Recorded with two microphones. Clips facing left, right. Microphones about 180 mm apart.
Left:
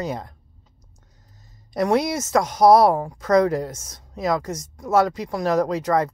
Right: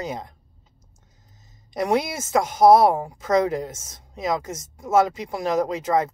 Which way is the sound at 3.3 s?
25° right (ahead or behind).